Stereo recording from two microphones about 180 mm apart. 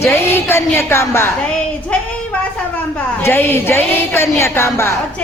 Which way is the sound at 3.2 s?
10° left (ahead or behind).